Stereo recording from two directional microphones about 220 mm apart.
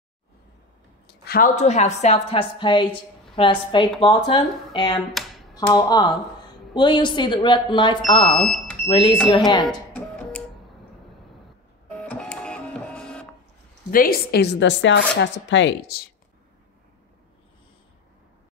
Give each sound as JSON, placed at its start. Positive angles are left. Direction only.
{"t": 1.0, "sound": "a woman's voice", "side_deg": 45}
{"t": 8.4, "sound": "speech", "side_deg": 0}
{"t": 8.8, "sound": "speech", "side_deg": 25}
{"t": 9.7, "sound": "music", "side_deg": 5}
{"t": 12.0, "sound": "printer", "side_deg": 5}
{"t": 13.8, "sound": "speech", "side_deg": 40}